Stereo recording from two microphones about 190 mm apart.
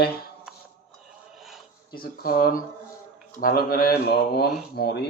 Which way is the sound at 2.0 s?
50° left (ahead or behind).